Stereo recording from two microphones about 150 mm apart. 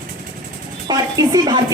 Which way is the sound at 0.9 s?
25° right (ahead or behind).